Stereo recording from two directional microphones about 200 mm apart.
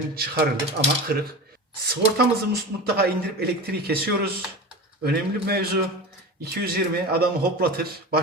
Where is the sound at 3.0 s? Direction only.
50° right (ahead or behind).